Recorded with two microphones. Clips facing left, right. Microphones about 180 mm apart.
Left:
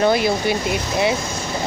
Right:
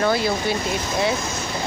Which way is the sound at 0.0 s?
15° left (ahead or behind).